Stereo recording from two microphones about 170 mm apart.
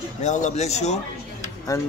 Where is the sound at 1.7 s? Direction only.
20° left (ahead or behind).